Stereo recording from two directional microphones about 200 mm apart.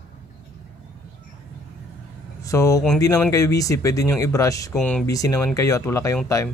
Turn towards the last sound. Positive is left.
turn(degrees=15)  # may be behind; listen again after turning